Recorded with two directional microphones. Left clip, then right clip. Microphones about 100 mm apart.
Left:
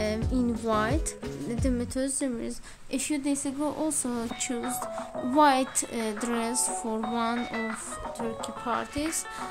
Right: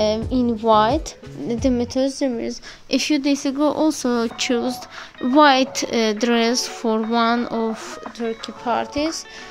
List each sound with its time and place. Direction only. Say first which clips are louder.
0.0 s speech: right 9 dB; 15° right (ahead or behind)
1.6 s a woman's voice: right 11 dB; 30° right (ahead or behind)
2.9 s speech: right 10 dB; 45° right (ahead or behind)
3.5 s speech: right 11 dB; 65° right (ahead or behind)
8.6 s a woman's voice: right 10 dB; 25° right (ahead or behind)